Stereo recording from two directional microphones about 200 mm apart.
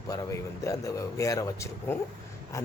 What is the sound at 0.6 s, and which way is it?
Speech, 15° left (ahead or behind).